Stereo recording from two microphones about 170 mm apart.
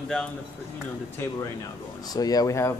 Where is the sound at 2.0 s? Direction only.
20° left (ahead or behind).